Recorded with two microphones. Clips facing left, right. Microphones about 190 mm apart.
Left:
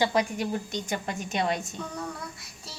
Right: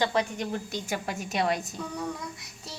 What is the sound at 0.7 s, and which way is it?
A child's voice, 5° right (ahead or behind).